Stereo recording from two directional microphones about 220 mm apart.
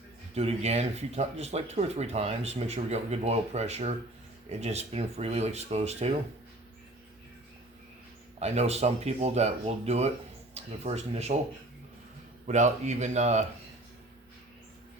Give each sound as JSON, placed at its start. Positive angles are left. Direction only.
{"t": 0.3, "sound": "speech", "side_deg": -30}
{"t": 8.4, "sound": "speech", "side_deg": -30}
{"t": 12.5, "sound": "speech", "side_deg": -30}